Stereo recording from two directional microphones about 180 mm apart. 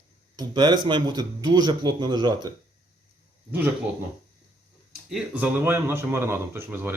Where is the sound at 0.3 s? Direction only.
25° right (ahead or behind).